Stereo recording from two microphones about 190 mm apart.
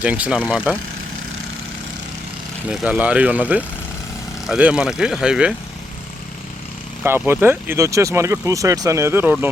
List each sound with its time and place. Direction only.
0.0 s speech: 5° right (ahead or behind)
2.6 s speech: 5° right (ahead or behind)
7.0 s speech: 10° right (ahead or behind)